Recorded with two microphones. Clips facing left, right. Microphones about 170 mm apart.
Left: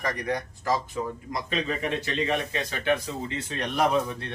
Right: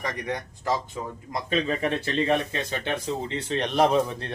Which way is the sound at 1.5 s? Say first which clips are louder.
Right 4 dB; 40° right (ahead or behind).